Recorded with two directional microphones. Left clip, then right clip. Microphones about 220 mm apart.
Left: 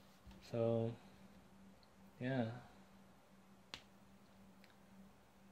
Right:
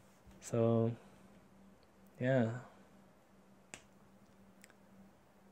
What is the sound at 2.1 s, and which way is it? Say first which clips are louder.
Speech: right 9 dB; 45° right (ahead or behind).